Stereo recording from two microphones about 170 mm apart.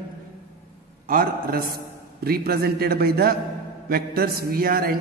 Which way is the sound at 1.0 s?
60° right (ahead or behind).